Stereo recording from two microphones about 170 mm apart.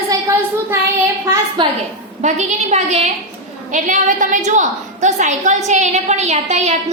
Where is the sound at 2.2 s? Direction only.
45° right (ahead or behind).